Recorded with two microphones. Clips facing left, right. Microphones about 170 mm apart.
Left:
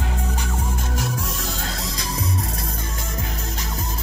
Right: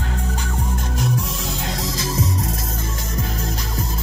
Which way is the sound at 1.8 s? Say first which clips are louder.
Right 5 dB; 90° right.